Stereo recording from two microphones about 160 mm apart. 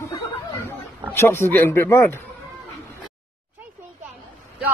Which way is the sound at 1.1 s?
15° left (ahead or behind).